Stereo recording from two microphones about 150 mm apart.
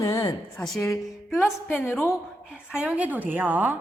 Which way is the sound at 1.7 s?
15° left (ahead or behind).